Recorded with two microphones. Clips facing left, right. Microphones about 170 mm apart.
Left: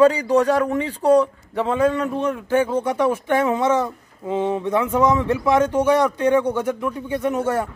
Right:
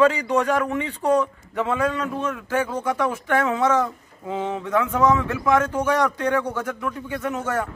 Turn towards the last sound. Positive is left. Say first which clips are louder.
# left 4 dB
turn(degrees=30)  # may be behind; listen again after turning